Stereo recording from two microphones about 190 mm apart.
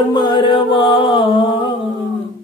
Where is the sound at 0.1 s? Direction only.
20° left (ahead or behind).